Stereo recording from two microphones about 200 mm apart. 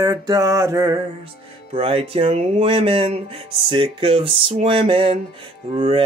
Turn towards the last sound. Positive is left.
turn(degrees=-25)  # may be behind; listen again after turning